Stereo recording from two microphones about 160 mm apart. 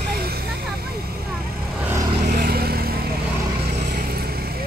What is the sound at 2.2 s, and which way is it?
Vehicle, 70° right (ahead or behind).